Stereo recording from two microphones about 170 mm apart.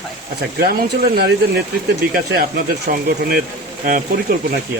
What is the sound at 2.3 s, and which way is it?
Speech, 70° right (ahead or behind).